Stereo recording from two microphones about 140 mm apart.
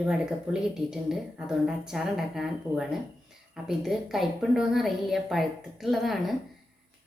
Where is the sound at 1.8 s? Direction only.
Centre (ahead or behind).